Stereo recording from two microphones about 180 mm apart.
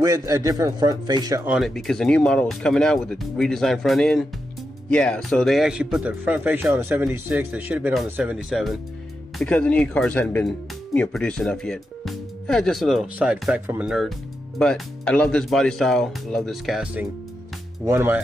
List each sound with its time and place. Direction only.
0.0 s a man's voice: 20° right (ahead or behind)
1.4 s speech: 5° right (ahead or behind)